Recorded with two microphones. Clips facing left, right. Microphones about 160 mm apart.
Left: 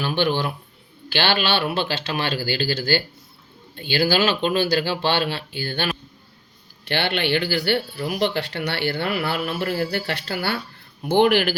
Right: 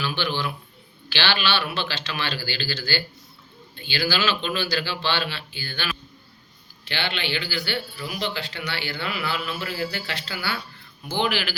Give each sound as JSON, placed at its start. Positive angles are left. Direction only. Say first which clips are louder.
{"t": 0.0, "sound": "speech", "louder": "left 5 dB", "side_deg": 55}